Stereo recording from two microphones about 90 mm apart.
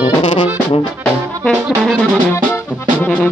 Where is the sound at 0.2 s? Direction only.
65° left (ahead or behind).